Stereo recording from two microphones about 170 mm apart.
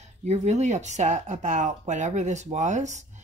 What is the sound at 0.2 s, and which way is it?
Speech, 40° right (ahead or behind).